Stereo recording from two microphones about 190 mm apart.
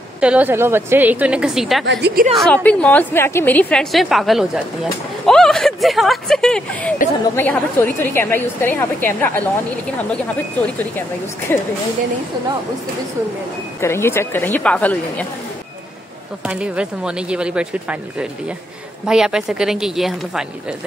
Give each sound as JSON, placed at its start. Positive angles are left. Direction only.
{"t": 0.2, "sound": "a woman's voice", "side_deg": -5}
{"t": 1.9, "sound": "a woman's voice", "side_deg": -60}
{"t": 2.3, "sound": "a woman's voice", "side_deg": 5}
{"t": 11.5, "sound": "a woman's voice", "side_deg": 10}
{"t": 13.7, "sound": "a woman's voice", "side_deg": 15}
{"t": 16.4, "sound": "a woman's voice", "side_deg": -5}
{"t": 19.0, "sound": "a woman's voice", "side_deg": -5}